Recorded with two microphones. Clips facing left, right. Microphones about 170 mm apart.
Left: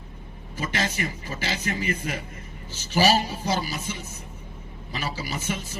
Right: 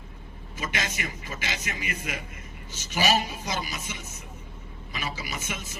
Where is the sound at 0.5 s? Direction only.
35° left (ahead or behind).